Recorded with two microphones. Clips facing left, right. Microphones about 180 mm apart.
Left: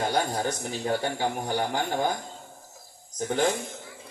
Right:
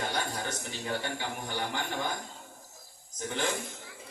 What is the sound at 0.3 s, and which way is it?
A man's voice, 40° left (ahead or behind).